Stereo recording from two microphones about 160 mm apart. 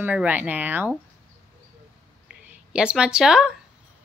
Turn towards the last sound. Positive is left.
turn(degrees=-5)  # may be behind; listen again after turning